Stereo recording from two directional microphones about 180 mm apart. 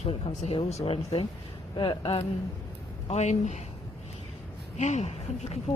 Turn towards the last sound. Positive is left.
turn(degrees=40)  # may be behind; listen again after turning